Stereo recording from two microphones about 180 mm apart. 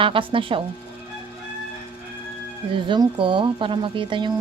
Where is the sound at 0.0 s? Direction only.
30° right (ahead or behind).